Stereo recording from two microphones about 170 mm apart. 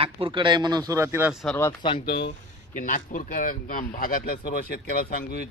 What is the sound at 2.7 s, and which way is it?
Speech, 50° left (ahead or behind).